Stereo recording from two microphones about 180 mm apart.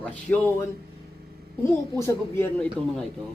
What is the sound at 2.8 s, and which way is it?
Speech, 5° left (ahead or behind).